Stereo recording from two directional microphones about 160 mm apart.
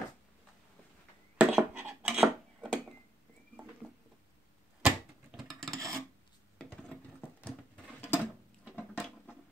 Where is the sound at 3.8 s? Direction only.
25° right (ahead or behind).